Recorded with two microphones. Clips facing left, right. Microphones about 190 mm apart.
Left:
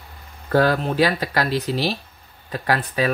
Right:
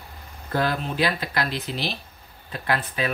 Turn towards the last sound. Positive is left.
turn(degrees=40)  # may be behind; listen again after turning